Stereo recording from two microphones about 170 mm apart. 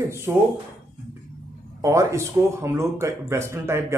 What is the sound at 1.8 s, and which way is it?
Speech, 20° right (ahead or behind).